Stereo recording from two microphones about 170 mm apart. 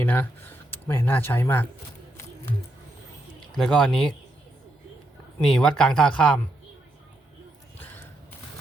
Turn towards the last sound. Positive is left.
turn(degrees=10)  # may be behind; listen again after turning